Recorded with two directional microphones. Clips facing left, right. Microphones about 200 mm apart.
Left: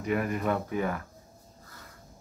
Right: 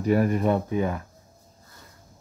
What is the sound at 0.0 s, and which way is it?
Speech, 35° right (ahead or behind).